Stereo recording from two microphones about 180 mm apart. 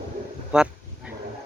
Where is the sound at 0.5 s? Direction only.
5° right (ahead or behind).